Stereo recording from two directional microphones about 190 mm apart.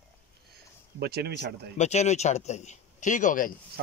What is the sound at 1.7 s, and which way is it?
A man's voice, 35° left (ahead or behind).